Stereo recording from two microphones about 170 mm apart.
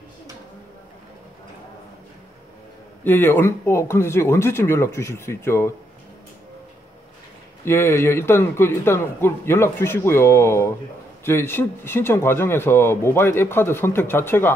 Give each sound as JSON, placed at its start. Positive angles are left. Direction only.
{"t": 3.0, "sound": "speech", "side_deg": 10}
{"t": 7.6, "sound": "speech", "side_deg": 15}